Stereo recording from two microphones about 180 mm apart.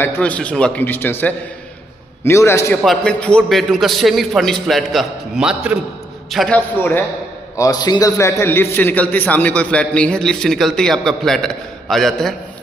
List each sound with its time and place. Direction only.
0.0 s a man's voice: 10° left (ahead or behind)
2.8 s a man's voice: 5° left (ahead or behind)
6.8 s a man's voice: 10° left (ahead or behind)